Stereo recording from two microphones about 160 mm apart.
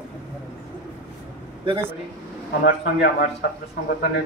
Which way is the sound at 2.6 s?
90° left.